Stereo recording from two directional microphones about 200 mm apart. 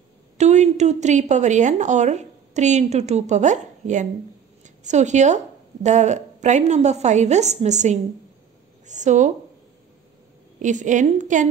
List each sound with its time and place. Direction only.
0.4 s a woman's voice: 35° right (ahead or behind)
10.6 s a woman's voice: 40° right (ahead or behind)